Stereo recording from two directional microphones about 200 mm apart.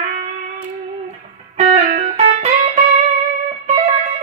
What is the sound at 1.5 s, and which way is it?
Music, 35° right (ahead or behind).